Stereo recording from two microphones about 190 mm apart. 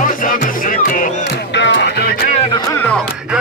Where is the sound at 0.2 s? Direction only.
45° left (ahead or behind).